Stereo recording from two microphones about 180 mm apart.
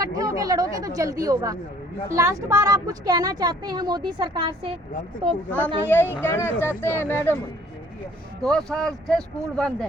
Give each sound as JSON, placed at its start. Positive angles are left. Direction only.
{"t": 0.0, "sound": "speech", "side_deg": -20}
{"t": 5.5, "sound": "speech", "side_deg": 10}
{"t": 8.4, "sound": "speech", "side_deg": 5}